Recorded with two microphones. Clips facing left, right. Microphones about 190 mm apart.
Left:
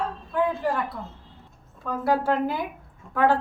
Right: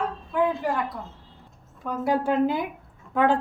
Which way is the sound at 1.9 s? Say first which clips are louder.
Even; 15° right (ahead or behind).